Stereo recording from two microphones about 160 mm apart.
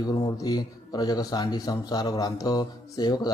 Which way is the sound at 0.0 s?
25° left (ahead or behind).